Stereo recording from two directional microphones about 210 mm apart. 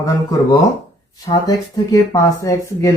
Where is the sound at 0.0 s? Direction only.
15° left (ahead or behind).